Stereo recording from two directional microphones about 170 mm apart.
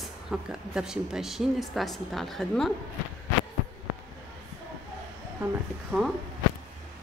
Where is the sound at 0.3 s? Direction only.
5° right (ahead or behind).